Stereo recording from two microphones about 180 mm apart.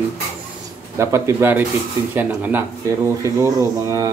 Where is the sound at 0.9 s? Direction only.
15° right (ahead or behind).